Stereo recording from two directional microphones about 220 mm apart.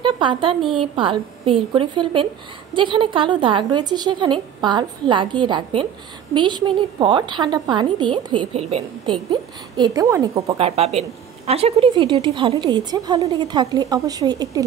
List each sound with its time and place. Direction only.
0.0 s a woman's voice: 20° right (ahead or behind)
10.6 s a woman's voice: 30° right (ahead or behind)